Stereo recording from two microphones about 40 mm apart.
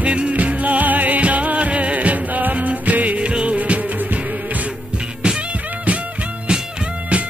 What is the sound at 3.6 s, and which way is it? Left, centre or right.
Music, right.